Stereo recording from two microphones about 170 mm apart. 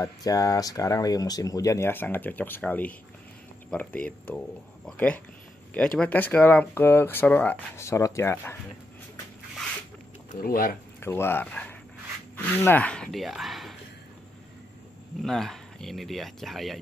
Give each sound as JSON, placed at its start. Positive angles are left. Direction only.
{"t": 0.0, "sound": "speech", "side_deg": 20}
{"t": 10.3, "sound": "speech", "side_deg": 55}
{"t": 11.0, "sound": "speech", "side_deg": 15}
{"t": 15.2, "sound": "speech", "side_deg": 0}